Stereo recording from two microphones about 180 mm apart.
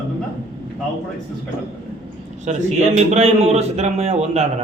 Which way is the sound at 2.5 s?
40° right (ahead or behind).